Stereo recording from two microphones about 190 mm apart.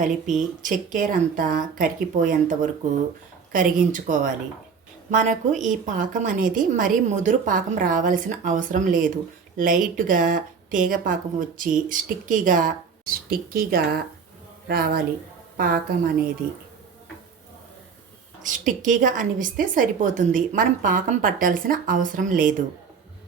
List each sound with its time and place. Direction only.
0.6 s a woman's voice: 45° right (ahead or behind)
18.4 s a woman's voice: 45° right (ahead or behind)